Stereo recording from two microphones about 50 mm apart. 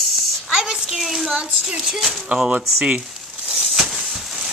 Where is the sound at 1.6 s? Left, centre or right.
Centre.